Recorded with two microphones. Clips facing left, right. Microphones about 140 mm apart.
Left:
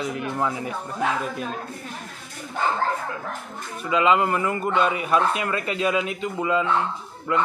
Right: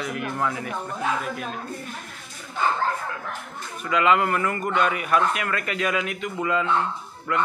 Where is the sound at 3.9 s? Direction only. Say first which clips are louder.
Left 1 dB; 20° left (ahead or behind).